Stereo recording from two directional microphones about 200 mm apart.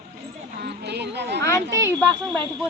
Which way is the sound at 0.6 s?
55° right (ahead or behind).